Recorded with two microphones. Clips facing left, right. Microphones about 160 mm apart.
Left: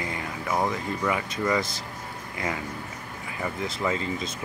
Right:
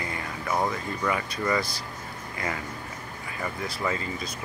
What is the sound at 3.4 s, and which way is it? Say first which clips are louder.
Speech: left 2 dB; 20° left (ahead or behind).